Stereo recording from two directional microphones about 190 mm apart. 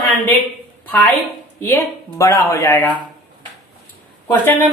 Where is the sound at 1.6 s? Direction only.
15° left (ahead or behind).